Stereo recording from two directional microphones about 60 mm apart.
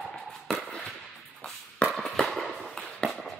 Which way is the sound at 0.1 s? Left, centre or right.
Centre.